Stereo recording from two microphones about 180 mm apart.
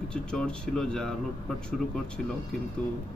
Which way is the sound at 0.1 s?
5° left (ahead or behind).